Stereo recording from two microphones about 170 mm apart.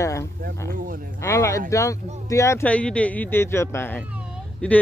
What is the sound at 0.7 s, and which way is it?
Speech, 55° right (ahead or behind).